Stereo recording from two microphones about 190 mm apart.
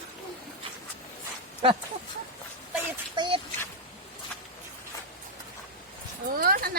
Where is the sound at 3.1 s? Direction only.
25° right (ahead or behind).